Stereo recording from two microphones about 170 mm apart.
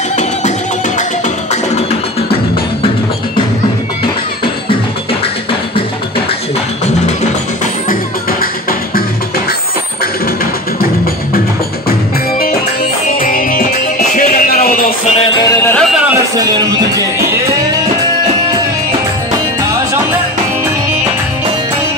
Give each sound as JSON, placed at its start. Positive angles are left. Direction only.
{"t": 7.9, "sound": "music", "side_deg": 60}
{"t": 13.2, "sound": "music", "side_deg": 55}
{"t": 15.0, "sound": "music", "side_deg": 35}
{"t": 15.4, "sound": "music", "side_deg": 20}
{"t": 15.7, "sound": "music", "side_deg": 0}
{"t": 16.3, "sound": "music", "side_deg": -20}